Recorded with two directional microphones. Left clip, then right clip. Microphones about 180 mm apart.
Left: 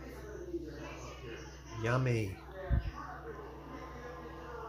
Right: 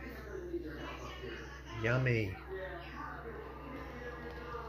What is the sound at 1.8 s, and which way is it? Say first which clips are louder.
Speech: right 1 dB; 15° left (ahead or behind).